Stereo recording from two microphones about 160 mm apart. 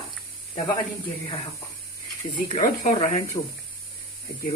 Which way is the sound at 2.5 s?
60° left (ahead or behind).